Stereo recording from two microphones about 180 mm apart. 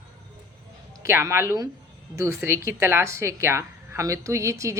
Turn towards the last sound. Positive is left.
turn(degrees=-15)  # may be behind; listen again after turning